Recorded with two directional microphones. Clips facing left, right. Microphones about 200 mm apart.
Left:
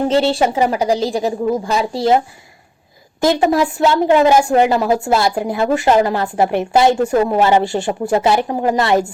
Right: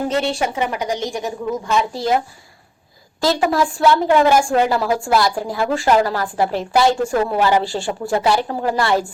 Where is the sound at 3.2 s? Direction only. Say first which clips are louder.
Left 3 dB; 20° left (ahead or behind).